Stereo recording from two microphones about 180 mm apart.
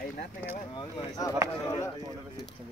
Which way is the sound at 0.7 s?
20° left (ahead or behind).